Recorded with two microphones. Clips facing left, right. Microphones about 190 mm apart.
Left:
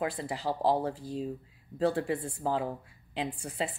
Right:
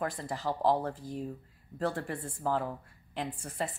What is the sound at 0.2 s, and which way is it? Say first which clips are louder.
Speech: left 1 dB; 15° left (ahead or behind).